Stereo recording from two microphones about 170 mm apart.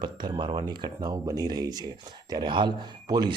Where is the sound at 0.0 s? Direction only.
25° right (ahead or behind).